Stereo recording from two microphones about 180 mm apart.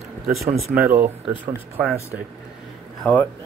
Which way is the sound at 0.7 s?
15° right (ahead or behind).